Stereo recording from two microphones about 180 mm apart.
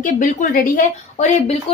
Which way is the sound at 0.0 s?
45° left (ahead or behind).